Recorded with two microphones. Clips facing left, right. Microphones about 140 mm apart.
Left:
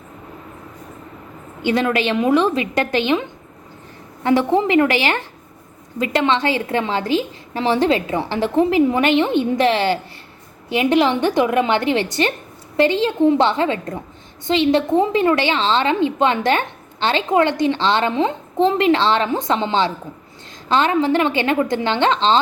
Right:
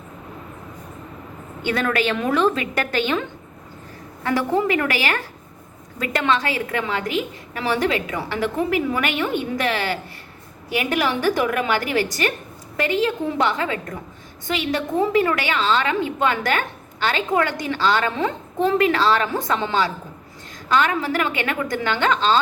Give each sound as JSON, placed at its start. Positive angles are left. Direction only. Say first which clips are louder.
{"t": 1.6, "sound": "a woman's voice", "louder": "left 3 dB", "side_deg": 20}